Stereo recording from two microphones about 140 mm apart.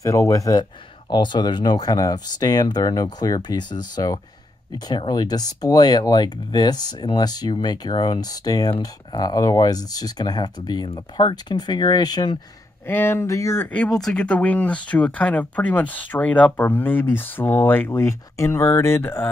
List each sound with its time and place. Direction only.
0.0 s speech: 20° left (ahead or behind)
12.8 s speech: 15° left (ahead or behind)
13.7 s speech: 5° left (ahead or behind)